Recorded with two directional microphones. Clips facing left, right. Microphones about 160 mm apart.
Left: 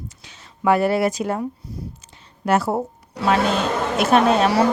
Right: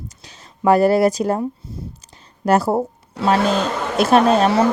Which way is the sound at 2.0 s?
40° right (ahead or behind).